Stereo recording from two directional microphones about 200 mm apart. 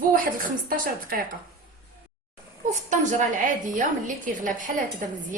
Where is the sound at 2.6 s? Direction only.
35° right (ahead or behind).